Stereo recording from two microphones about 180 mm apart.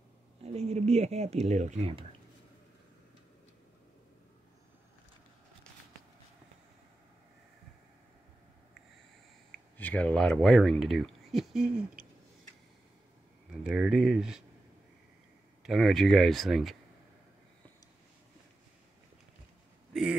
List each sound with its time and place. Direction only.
0.4 s speech: 35° right (ahead or behind)
9.8 s speech: 10° left (ahead or behind)
13.7 s speech: 5° right (ahead or behind)
15.6 s speech: centre (ahead or behind)
19.9 s speech: 5° right (ahead or behind)